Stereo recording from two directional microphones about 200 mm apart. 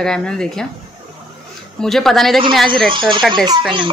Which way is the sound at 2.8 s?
25° right (ahead or behind).